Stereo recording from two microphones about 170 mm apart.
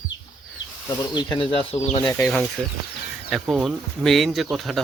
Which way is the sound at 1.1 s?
25° left (ahead or behind).